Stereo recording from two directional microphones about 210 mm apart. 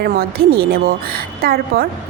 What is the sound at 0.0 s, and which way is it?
A woman's voice, 45° right (ahead or behind).